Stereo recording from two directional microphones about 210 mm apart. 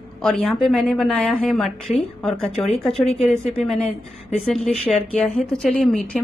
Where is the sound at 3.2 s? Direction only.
30° left (ahead or behind).